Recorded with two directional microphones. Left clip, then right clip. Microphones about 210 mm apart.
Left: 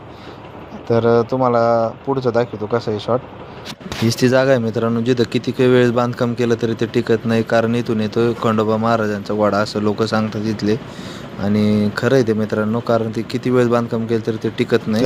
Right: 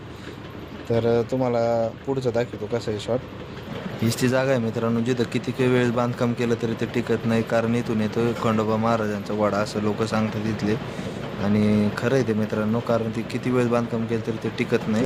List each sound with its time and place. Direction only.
0.9 s speech: 15° left (ahead or behind)
4.1 s speech: 30° left (ahead or behind)